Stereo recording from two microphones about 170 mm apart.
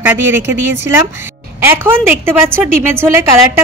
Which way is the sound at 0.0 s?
10° right (ahead or behind).